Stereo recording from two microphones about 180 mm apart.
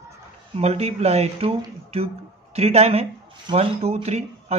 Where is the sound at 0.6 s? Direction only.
35° right (ahead or behind).